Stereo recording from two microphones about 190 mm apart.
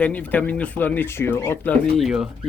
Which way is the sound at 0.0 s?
10° left (ahead or behind).